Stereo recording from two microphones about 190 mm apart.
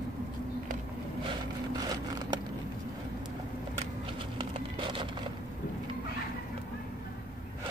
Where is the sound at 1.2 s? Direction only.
25° right (ahead or behind).